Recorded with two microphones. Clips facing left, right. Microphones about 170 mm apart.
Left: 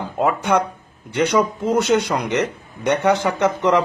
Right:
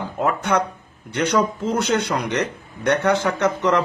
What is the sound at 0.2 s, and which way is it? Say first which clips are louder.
Speech: left 2 dB; 10° left (ahead or behind).